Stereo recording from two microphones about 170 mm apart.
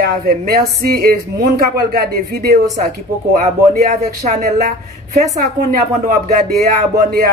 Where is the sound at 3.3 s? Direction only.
45° right (ahead or behind).